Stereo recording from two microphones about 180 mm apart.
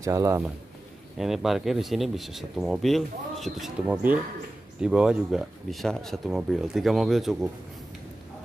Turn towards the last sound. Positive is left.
turn(degrees=0)  # may be behind; listen again after turning